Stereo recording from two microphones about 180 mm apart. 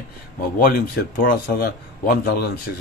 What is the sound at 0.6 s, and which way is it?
A man's voice, 55° left (ahead or behind).